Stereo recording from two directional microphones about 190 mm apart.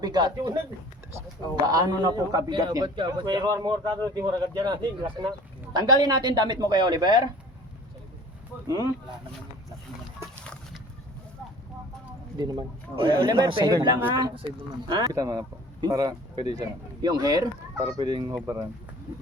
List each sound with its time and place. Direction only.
0.0 s a man's voice: 20° right (ahead or behind)
1.6 s a man's voice: 20° right (ahead or behind)
8.6 s speech: 20° right (ahead or behind)
12.4 s a man's voice: 25° right (ahead or behind)